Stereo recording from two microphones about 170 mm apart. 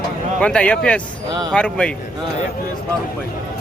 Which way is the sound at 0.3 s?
5° left (ahead or behind).